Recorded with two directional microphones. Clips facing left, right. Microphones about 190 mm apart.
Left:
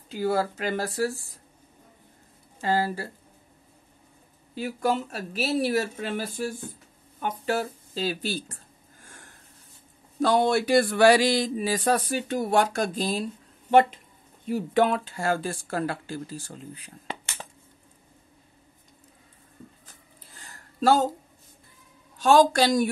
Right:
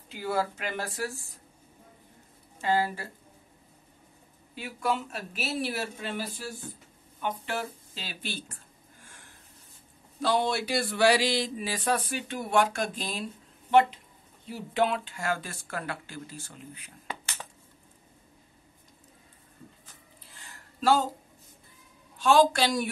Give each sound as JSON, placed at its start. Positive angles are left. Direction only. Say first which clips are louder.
{"t": 0.1, "sound": "speech", "louder": "left 5 dB", "side_deg": 40}
{"t": 2.6, "sound": "speech", "louder": "left 2 dB", "side_deg": 35}
{"t": 4.6, "sound": "speech", "louder": "left 4 dB", "side_deg": 40}
{"t": 7.2, "sound": "a woman's voice", "louder": "left 5 dB", "side_deg": 40}
{"t": 9.0, "sound": "a sound", "louder": "left 5 dB", "side_deg": 45}
{"t": 10.2, "sound": "speech", "louder": "left 5 dB", "side_deg": 50}
{"t": 13.7, "sound": "speech", "louder": "left 3 dB", "side_deg": 50}
{"t": 20.3, "sound": "a sound", "louder": "left 7 dB", "side_deg": 40}
{"t": 22.2, "sound": "speech", "louder": "left 3 dB", "side_deg": 45}